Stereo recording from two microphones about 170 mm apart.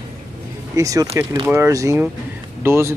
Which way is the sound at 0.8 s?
20° right (ahead or behind).